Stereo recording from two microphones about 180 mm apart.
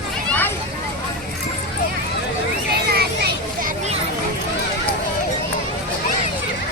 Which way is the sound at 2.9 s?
60° right (ahead or behind).